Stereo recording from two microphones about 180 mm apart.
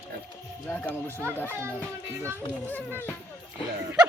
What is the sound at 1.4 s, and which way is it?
Speech, 10° right (ahead or behind).